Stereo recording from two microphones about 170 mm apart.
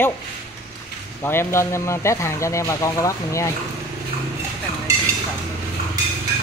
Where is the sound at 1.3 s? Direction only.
15° left (ahead or behind).